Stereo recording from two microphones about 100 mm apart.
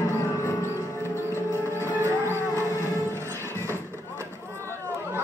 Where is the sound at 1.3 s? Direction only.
25° right (ahead or behind).